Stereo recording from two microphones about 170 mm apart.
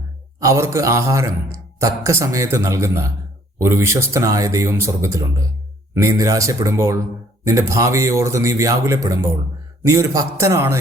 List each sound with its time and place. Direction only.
0.3 s a man's voice: 20° right (ahead or behind)